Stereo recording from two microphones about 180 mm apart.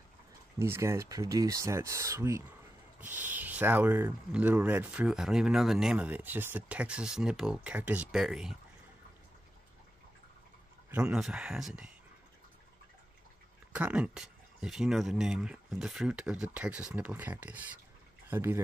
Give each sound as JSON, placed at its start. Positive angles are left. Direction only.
{"t": 0.6, "sound": "speech", "side_deg": -15}
{"t": 10.9, "sound": "speech", "side_deg": -5}
{"t": 13.7, "sound": "speech", "side_deg": -5}